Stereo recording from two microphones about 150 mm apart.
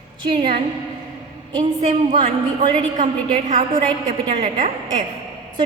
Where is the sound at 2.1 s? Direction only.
30° right (ahead or behind).